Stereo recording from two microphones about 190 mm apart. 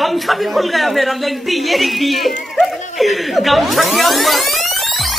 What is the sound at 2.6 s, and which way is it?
Music, centre (ahead or behind).